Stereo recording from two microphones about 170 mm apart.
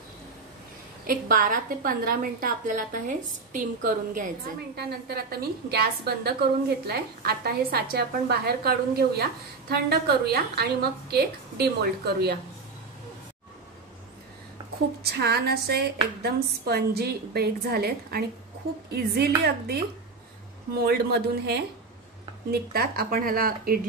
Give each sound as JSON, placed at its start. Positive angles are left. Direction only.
{"t": 1.0, "sound": "a woman's voice", "side_deg": -55}
{"t": 4.7, "sound": "a woman's voice", "side_deg": -65}
{"t": 15.0, "sound": "a woman's voice", "side_deg": -70}